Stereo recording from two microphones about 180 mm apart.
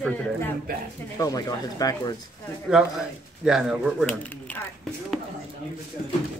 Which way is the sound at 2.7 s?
5° right (ahead or behind).